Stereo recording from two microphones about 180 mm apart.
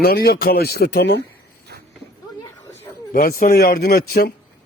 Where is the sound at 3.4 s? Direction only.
55° left (ahead or behind).